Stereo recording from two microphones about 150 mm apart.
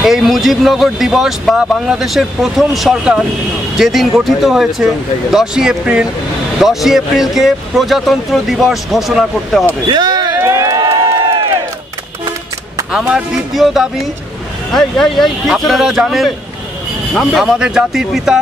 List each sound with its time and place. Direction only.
0.0 s speech: centre (ahead or behind)
9.8 s a sound: 30° right (ahead or behind)
12.9 s speech: 5° right (ahead or behind)